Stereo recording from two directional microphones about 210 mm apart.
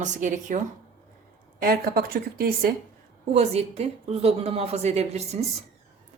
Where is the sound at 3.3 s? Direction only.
30° right (ahead or behind).